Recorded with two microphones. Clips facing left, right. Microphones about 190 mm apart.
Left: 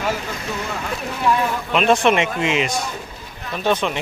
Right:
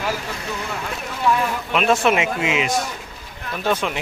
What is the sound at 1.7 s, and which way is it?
Speech, 5° right (ahead or behind).